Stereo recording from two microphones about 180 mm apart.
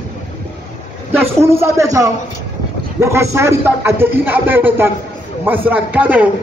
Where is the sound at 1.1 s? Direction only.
15° right (ahead or behind).